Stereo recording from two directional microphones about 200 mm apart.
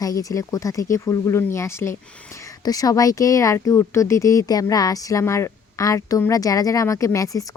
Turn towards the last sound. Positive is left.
turn(degrees=15)  # may be behind; listen again after turning